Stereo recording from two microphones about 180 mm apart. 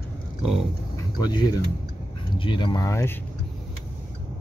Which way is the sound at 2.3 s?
25° left (ahead or behind).